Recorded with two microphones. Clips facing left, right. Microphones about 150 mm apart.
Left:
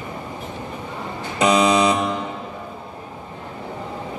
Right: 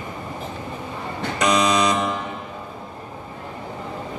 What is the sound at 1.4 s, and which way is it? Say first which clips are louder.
Buzzer: left 3 dB; 30° left (ahead or behind).